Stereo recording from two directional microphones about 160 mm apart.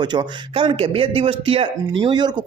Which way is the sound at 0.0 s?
25° right (ahead or behind).